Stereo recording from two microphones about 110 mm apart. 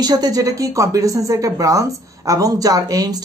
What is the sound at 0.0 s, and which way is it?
A man's voice, 35° right (ahead or behind).